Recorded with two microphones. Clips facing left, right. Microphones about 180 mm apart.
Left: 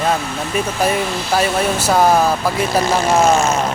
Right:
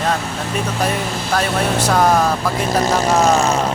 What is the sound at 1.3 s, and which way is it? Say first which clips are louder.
Speech: left 1 dB; 5° left (ahead or behind).